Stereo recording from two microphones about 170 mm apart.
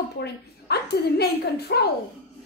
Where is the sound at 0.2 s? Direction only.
70° left (ahead or behind).